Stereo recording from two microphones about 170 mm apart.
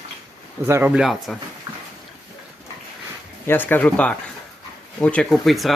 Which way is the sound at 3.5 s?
10° left (ahead or behind).